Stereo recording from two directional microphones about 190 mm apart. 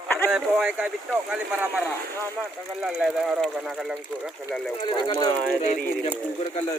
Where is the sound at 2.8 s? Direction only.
5° right (ahead or behind).